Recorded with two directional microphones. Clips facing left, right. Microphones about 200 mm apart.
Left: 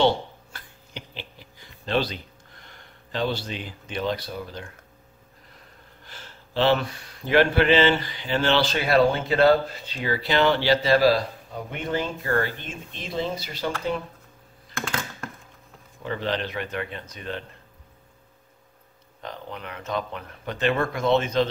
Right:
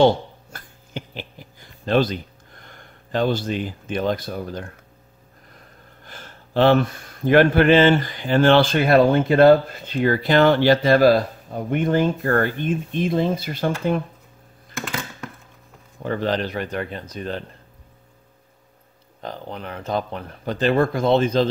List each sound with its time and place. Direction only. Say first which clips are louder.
0.0 s a sound: right 5 dB; 45° right (ahead or behind)
6.0 s speech: right 4 dB; 50° right (ahead or behind)
16.0 s speech: right 5 dB; 45° right (ahead or behind)
19.2 s speech: right 4 dB; 35° right (ahead or behind)